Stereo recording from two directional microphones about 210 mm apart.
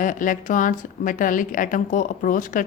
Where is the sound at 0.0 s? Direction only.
40° left (ahead or behind).